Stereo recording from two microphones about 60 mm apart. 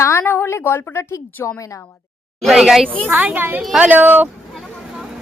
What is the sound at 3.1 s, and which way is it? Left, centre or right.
A woman's voice, right.